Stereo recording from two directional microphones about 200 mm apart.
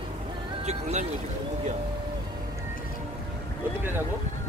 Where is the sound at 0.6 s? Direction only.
35° right (ahead or behind).